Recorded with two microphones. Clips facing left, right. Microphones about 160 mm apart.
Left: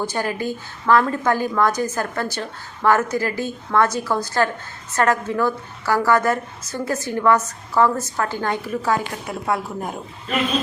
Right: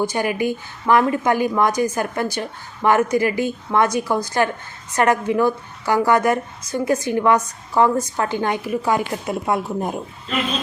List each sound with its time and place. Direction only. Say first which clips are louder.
0.0 s a woman's voice: right 3 dB; 15° right (ahead or behind)